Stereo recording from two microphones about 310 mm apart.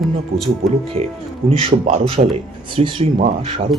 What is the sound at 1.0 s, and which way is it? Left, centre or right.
Speech, centre.